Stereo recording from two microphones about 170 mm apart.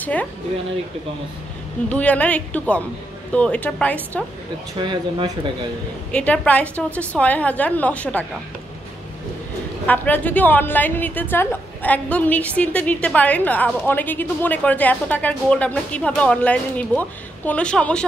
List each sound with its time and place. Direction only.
0.0 s speech: 10° left (ahead or behind)
1.9 s a woman's voice: 10° left (ahead or behind)
4.7 s speech: 25° right (ahead or behind)
6.1 s a woman's voice: 10° left (ahead or behind)
9.8 s a woman's voice: 10° left (ahead or behind)